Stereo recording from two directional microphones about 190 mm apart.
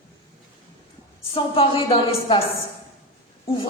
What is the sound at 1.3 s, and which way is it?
A man's voice, 30° left (ahead or behind).